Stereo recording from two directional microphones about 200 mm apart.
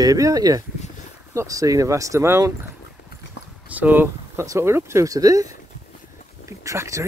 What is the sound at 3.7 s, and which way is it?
Speech, 10° right (ahead or behind).